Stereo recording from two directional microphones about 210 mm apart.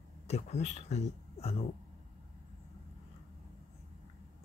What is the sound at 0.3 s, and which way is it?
Speech, 30° left (ahead or behind).